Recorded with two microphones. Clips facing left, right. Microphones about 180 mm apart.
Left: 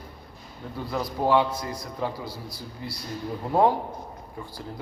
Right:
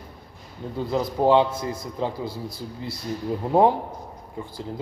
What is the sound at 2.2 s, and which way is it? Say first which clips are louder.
Speech: right 5 dB; 50° right (ahead or behind).